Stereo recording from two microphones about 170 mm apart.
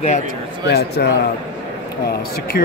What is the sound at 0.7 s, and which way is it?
Speech, 75° left (ahead or behind).